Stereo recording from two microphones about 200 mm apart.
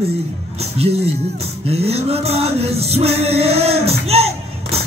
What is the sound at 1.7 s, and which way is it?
Music, 30° right (ahead or behind).